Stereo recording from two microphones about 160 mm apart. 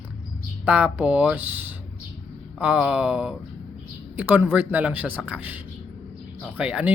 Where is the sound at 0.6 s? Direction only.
10° right (ahead or behind).